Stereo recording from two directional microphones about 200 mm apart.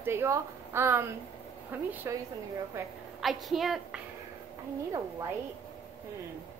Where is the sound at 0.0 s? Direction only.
10° right (ahead or behind).